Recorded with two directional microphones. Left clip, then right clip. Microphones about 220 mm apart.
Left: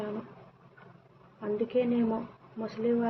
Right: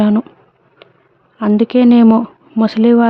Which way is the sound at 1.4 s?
60° right (ahead or behind).